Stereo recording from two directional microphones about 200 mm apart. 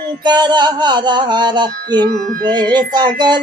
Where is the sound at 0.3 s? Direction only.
20° right (ahead or behind).